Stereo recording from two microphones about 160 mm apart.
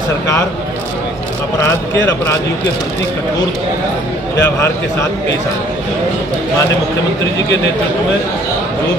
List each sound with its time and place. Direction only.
4.4 s a man's voice: 15° left (ahead or behind)